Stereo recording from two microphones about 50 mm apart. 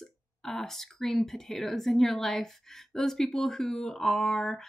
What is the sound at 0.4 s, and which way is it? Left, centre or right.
A woman's voice, centre.